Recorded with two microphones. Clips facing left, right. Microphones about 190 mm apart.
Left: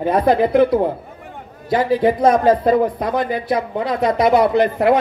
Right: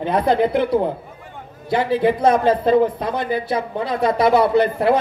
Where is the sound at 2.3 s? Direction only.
25° right (ahead or behind).